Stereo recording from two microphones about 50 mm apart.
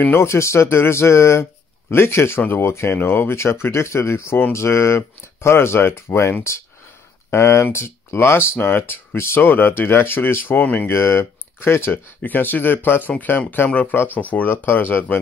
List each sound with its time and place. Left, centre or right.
0.2 s speech: left
3.0 s speech: left
8.5 s speech: left
9.1 s speech: left
9.4 s speech: left
10.9 s speech: left
12.2 s speech: left
13.9 s speech: left